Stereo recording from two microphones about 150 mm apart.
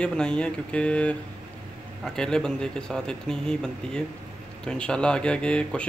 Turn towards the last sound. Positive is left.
turn(degrees=5)  # may be behind; listen again after turning